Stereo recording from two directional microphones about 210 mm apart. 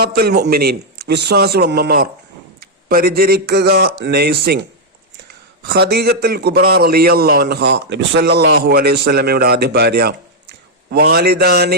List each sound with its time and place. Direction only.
0.0 s a man's voice: 50° right (ahead or behind)
5.6 s a man's voice: 50° right (ahead or behind)